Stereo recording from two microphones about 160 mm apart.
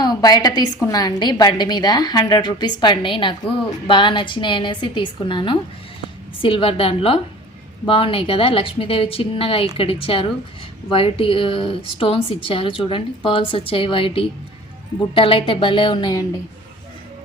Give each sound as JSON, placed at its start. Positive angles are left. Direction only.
{"t": 0.0, "sound": "a woman's voice", "side_deg": 25}